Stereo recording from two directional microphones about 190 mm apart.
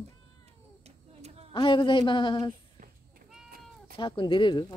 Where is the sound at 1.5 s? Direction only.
25° left (ahead or behind).